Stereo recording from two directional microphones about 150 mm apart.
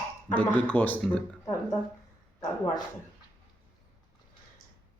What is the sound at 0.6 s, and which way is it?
Speech, 10° left (ahead or behind).